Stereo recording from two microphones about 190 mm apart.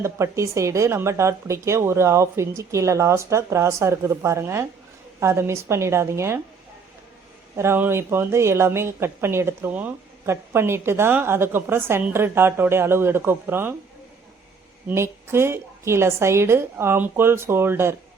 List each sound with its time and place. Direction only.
0.0 s a woman's voice: 15° right (ahead or behind)
7.5 s a woman's voice: 15° right (ahead or behind)
14.8 s a woman's voice: 15° right (ahead or behind)